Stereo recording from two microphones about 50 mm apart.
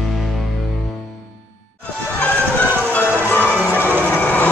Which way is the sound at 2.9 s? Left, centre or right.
Left.